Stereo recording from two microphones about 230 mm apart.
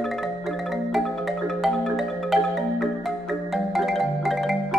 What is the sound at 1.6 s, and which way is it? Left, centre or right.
Marimba, centre.